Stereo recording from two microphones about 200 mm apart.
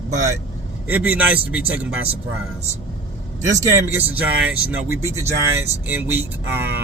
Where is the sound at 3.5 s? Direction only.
15° right (ahead or behind).